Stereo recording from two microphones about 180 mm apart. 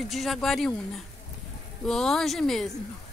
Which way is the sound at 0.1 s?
Centre (ahead or behind).